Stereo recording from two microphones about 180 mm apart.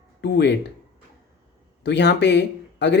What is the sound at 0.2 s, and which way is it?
Speech, 70° left (ahead or behind).